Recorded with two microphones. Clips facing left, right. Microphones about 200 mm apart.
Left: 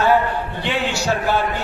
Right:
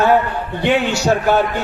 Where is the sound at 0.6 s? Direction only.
50° right (ahead or behind).